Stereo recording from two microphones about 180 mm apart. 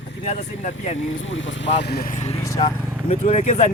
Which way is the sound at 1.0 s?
90° left.